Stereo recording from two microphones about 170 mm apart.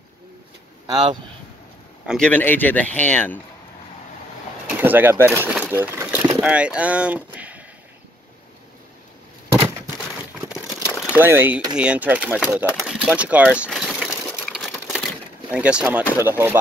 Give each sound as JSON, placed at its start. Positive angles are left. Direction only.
{"t": 0.8, "sound": "speech", "side_deg": -25}
{"t": 2.0, "sound": "speech", "side_deg": 5}
{"t": 4.6, "sound": "speech", "side_deg": -10}
{"t": 11.1, "sound": "speech", "side_deg": -10}
{"t": 13.7, "sound": "sewing machine", "side_deg": 0}
{"t": 15.5, "sound": "speech", "side_deg": -5}